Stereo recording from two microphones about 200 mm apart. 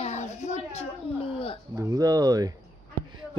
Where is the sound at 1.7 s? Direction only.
15° right (ahead or behind).